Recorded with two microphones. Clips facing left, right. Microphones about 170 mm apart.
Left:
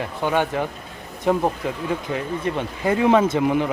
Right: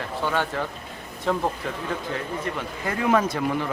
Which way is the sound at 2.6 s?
20° left (ahead or behind).